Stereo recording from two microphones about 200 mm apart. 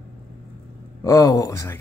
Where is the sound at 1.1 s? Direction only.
15° left (ahead or behind).